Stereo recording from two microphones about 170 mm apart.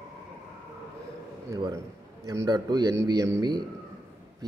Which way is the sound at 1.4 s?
20° right (ahead or behind).